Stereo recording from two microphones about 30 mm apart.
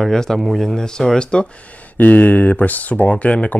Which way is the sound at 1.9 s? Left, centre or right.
Left.